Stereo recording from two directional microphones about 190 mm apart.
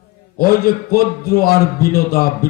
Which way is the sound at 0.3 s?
50° left (ahead or behind).